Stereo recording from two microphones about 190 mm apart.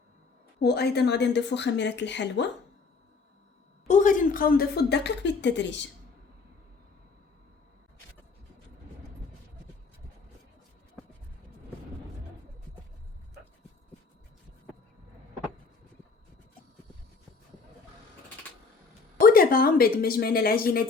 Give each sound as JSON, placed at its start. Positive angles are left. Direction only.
{"t": 0.6, "sound": "a woman's voice", "side_deg": 60}
{"t": 3.8, "sound": "a woman's voice", "side_deg": 40}
{"t": 19.2, "sound": "a woman's voice", "side_deg": 50}